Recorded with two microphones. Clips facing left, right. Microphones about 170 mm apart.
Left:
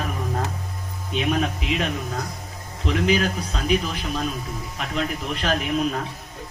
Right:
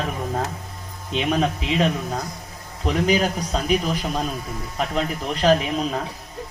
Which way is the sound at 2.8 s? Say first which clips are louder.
Right 1 dB; 40° right (ahead or behind).